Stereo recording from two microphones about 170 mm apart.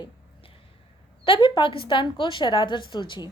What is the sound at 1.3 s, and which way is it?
A woman's voice, 30° left (ahead or behind).